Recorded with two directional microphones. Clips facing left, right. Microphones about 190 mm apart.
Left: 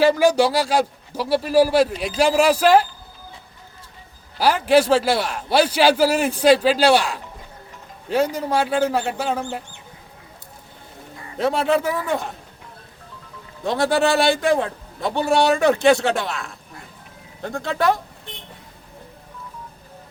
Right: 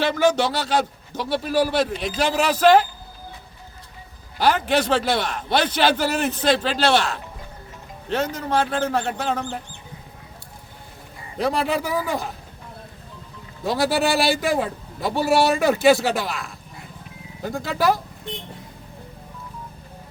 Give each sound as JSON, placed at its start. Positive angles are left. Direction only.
{"t": 0.0, "sound": "a man's voice", "side_deg": 10}
{"t": 4.4, "sound": "a man's voice", "side_deg": 5}
{"t": 11.3, "sound": "a man's voice", "side_deg": 0}
{"t": 13.7, "sound": "a man's voice", "side_deg": -5}